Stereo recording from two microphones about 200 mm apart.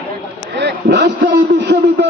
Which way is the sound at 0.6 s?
60° right (ahead or behind).